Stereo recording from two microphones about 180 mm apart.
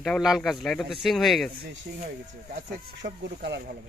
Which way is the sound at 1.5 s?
60° right (ahead or behind).